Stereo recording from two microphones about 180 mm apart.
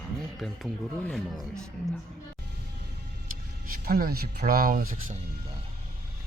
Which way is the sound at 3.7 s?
55° right (ahead or behind).